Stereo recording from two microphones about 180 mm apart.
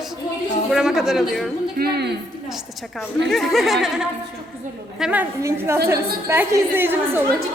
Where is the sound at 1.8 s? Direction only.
60° right (ahead or behind).